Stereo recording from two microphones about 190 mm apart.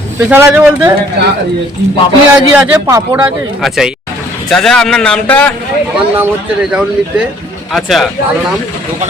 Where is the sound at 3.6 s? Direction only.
Centre (ahead or behind).